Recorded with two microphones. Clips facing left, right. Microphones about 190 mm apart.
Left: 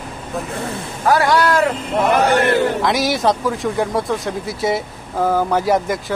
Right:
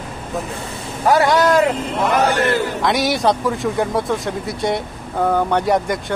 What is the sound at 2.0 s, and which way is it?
Speech, 60° left (ahead or behind).